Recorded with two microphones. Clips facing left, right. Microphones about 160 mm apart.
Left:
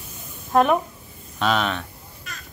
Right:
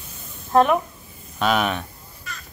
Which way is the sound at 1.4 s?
10° right (ahead or behind).